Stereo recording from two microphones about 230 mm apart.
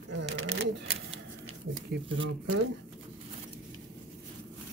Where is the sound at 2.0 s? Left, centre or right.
Right.